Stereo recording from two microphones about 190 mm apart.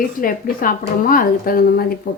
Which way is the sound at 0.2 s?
45° left (ahead or behind).